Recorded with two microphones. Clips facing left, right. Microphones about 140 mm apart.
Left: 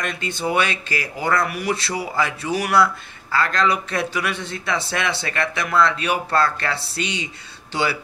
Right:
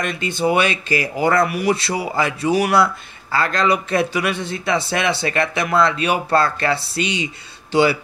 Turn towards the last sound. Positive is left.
turn(degrees=-15)  # may be behind; listen again after turning